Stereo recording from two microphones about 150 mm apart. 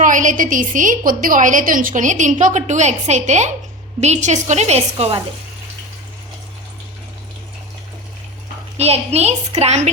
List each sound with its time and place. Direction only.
0.0 s a woman's voice: 60° right (ahead or behind)
8.8 s a woman's voice: 45° right (ahead or behind)